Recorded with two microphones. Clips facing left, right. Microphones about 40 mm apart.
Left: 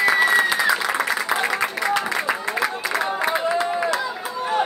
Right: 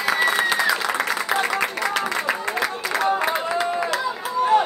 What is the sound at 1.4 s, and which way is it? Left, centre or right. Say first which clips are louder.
Music: even; centre.